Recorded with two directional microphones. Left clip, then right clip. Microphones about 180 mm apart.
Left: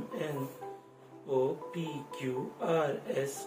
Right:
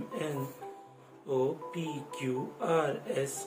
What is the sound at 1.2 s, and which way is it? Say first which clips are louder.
Speech: even; 20° right (ahead or behind).